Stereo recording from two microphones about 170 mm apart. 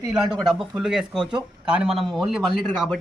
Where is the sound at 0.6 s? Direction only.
5° right (ahead or behind).